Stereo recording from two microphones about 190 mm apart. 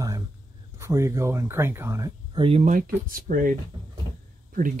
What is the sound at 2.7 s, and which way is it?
Speech, 50° right (ahead or behind).